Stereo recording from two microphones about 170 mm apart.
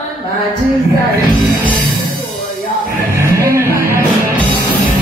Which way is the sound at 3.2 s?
15° right (ahead or behind).